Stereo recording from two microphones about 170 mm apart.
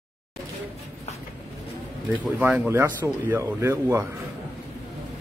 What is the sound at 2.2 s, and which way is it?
Speech, 10° right (ahead or behind).